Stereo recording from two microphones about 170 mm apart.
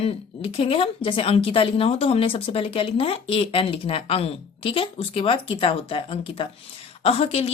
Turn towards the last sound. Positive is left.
turn(degrees=35)  # may be behind; listen again after turning